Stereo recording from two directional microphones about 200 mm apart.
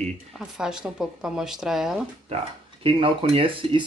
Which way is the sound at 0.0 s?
Centre (ahead or behind).